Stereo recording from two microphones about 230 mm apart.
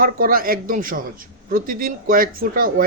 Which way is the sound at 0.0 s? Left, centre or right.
Right.